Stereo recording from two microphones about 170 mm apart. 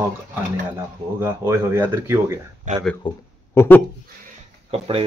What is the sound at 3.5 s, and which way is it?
Speech, 15° left (ahead or behind).